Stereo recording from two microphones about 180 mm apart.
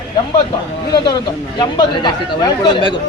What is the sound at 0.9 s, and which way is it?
Speech, 25° left (ahead or behind).